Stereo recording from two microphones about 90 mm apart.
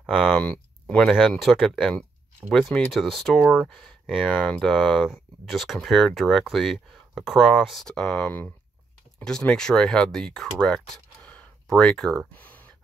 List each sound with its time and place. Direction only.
0.4 s speech: 15° left (ahead or behind)
4.1 s speech: 5° right (ahead or behind)
4.5 s speech: 5° left (ahead or behind)
7.8 s speech: 10° left (ahead or behind)
12.4 s a sound: 20° left (ahead or behind)